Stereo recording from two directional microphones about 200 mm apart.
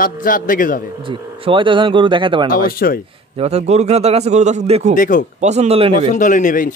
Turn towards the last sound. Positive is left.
turn(degrees=40)  # may be behind; listen again after turning